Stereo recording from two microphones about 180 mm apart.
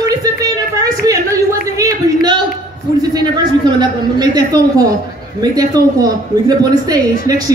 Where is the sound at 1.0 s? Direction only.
20° right (ahead or behind).